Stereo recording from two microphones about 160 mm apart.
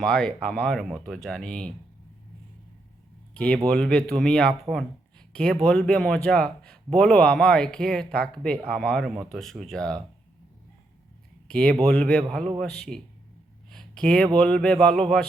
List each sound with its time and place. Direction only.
0.0 s a man's voice: 5° left (ahead or behind)
3.3 s a man's voice: 5° left (ahead or behind)
11.4 s a man's voice: 5° left (ahead or behind)
13.7 s a sound: 5° left (ahead or behind)
14.3 s a man's voice: 5° left (ahead or behind)